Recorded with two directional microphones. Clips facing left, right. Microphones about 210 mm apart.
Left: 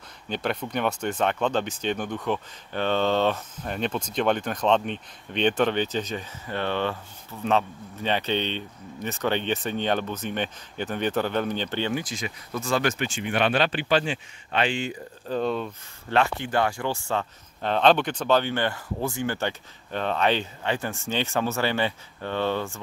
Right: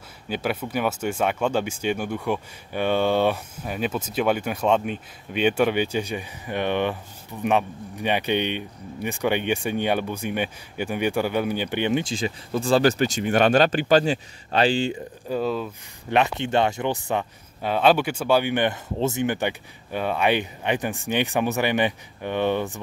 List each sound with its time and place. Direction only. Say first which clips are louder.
0.3 s speech: right 2 dB; 5° right (ahead or behind); by 15.0 s 30° right (ahead or behind)
15.2 s speech: right 1 dB; 5° right (ahead or behind)
16.1 s speech: right 2 dB; 20° right (ahead or behind)